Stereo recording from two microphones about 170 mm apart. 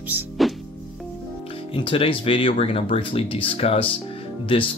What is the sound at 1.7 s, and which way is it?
Speech, 30° left (ahead or behind).